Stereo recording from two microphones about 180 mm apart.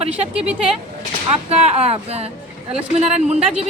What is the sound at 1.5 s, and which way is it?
A woman's voice, 35° right (ahead or behind).